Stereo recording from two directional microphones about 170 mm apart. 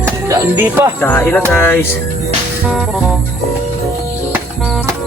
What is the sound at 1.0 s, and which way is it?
Speech, 10° left (ahead or behind).